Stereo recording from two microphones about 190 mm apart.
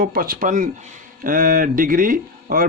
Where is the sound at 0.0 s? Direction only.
50° right (ahead or behind).